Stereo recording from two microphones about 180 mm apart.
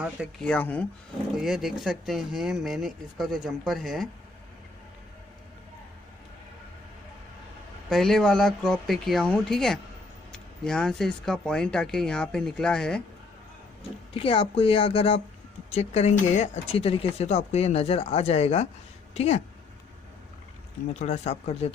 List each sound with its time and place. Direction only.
0.4 s speech: 10° left (ahead or behind)
1.3 s speech: centre (ahead or behind)
7.9 s speech: centre (ahead or behind)
14.1 s speech: 30° left (ahead or behind)
20.9 s speech: 40° left (ahead or behind)